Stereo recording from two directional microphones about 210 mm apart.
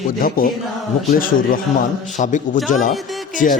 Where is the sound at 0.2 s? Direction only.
40° left (ahead or behind).